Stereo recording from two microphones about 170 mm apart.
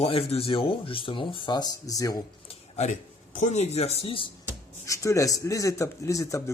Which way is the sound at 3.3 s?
45° left (ahead or behind).